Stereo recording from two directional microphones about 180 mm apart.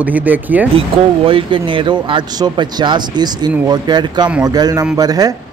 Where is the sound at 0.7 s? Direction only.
30° right (ahead or behind).